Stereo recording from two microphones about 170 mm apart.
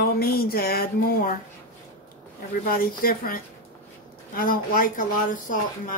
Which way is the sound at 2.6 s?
60° left (ahead or behind).